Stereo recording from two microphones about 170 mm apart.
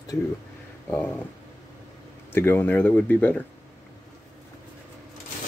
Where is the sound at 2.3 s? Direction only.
15° left (ahead or behind).